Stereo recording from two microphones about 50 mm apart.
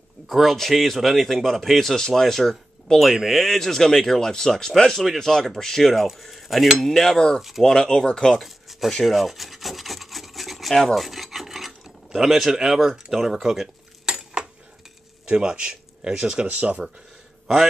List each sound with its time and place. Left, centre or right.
0.3 s speech: centre
8.4 s rub: centre
14.0 s cutlery: centre
15.2 s speech: centre
16.4 s speech: right